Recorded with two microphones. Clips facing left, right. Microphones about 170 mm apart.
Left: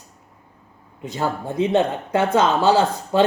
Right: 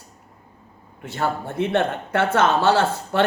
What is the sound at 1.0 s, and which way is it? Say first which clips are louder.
Speech: left 1 dB; 15° left (ahead or behind).